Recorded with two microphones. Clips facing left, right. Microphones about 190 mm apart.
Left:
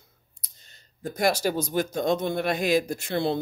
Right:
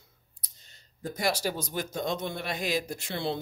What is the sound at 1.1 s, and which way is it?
Speech, 50° left (ahead or behind).